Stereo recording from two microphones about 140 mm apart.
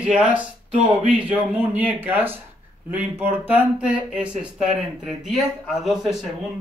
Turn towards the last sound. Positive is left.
turn(degrees=0)  # may be behind; listen again after turning